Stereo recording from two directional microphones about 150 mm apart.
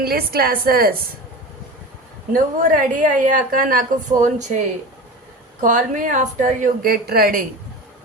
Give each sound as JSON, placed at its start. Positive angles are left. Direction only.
{"t": 0.0, "sound": "a woman's voice", "side_deg": -90}
{"t": 2.3, "sound": "a woman's voice", "side_deg": -60}
{"t": 6.8, "sound": "a woman's voice", "side_deg": -90}